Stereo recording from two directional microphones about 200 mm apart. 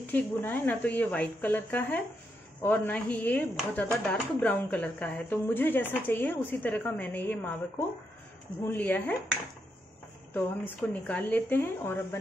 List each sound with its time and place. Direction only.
0.0 s speech: 10° left (ahead or behind)
8.6 s speech: 10° left (ahead or behind)
10.3 s speech: 10° left (ahead or behind)